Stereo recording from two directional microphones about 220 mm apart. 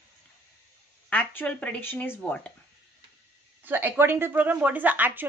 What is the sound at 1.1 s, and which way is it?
A woman's voice, 5° left (ahead or behind).